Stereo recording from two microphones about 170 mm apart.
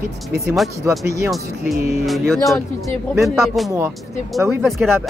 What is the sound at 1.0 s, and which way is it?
Speech, 15° right (ahead or behind).